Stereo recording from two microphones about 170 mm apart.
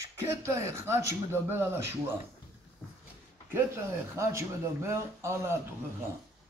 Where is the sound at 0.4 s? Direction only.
15° right (ahead or behind).